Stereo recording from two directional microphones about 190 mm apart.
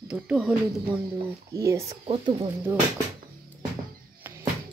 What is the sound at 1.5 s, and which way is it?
Speech, 15° right (ahead or behind).